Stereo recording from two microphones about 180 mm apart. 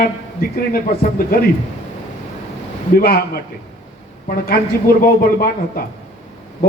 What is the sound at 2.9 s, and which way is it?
A man's voice, 55° left (ahead or behind).